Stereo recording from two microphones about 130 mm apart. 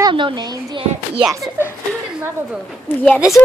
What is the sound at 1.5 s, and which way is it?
Speech, 20° left (ahead or behind).